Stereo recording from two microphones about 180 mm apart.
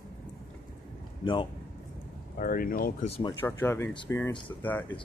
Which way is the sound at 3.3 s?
10° left (ahead or behind).